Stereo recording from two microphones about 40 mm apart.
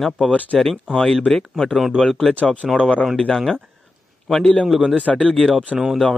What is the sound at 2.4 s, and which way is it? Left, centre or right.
Speech, left.